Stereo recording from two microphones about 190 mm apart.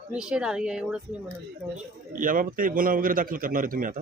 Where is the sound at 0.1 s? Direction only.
5° right (ahead or behind).